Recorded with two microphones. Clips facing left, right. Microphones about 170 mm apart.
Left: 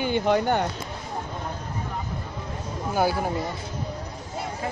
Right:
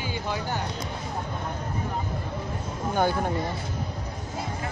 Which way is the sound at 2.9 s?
5° left (ahead or behind).